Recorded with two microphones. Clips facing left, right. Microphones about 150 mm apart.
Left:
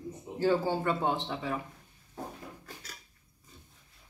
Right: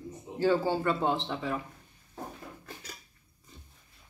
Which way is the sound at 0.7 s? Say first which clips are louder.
Right 1 dB; 15° left (ahead or behind).